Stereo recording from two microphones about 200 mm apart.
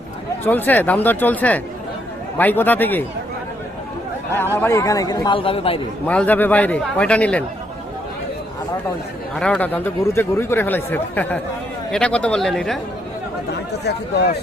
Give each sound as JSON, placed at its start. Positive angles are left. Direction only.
{"t": 0.4, "sound": "speech", "side_deg": 10}
{"t": 4.5, "sound": "a man's voice", "side_deg": 15}
{"t": 6.1, "sound": "speech", "side_deg": 10}
{"t": 9.3, "sound": "speech", "side_deg": 5}
{"t": 13.5, "sound": "speech", "side_deg": 55}